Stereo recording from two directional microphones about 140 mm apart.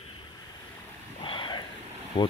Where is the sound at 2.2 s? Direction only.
30° left (ahead or behind).